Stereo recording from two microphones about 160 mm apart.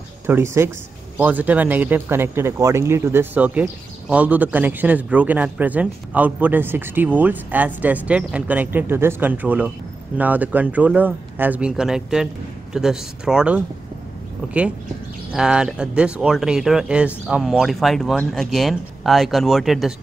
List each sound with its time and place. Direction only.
0.3 s speech: 15° right (ahead or behind)
15.3 s speech: 5° right (ahead or behind)